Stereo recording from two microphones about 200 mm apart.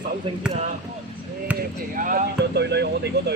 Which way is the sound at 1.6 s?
45° right (ahead or behind).